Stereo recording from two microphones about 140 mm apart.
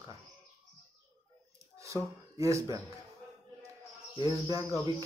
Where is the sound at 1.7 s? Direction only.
20° right (ahead or behind).